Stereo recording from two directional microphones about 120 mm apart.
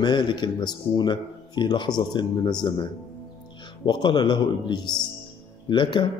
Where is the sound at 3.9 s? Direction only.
35° left (ahead or behind).